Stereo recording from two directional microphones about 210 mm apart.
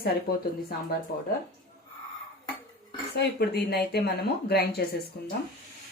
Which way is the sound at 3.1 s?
50° left (ahead or behind).